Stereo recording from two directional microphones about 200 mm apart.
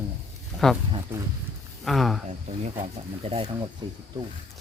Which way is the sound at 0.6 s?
5° left (ahead or behind).